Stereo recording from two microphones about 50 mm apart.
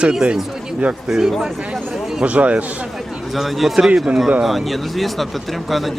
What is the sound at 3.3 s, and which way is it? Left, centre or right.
A man's voice, centre.